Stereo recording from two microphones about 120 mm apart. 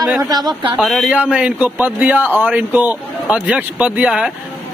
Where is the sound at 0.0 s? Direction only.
Centre (ahead or behind).